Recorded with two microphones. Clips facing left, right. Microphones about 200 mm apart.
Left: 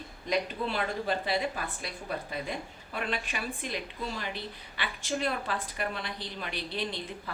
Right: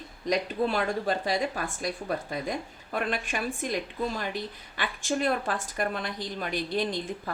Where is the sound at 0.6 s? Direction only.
50° right (ahead or behind).